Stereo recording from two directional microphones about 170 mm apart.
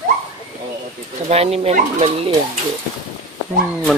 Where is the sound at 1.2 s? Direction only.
35° right (ahead or behind).